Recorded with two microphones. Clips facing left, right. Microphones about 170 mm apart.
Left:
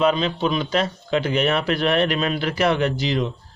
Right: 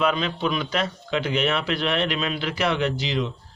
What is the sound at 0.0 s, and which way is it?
Speech, 30° left (ahead or behind).